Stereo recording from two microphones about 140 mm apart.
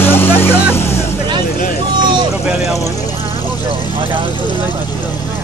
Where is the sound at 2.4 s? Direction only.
Centre (ahead or behind).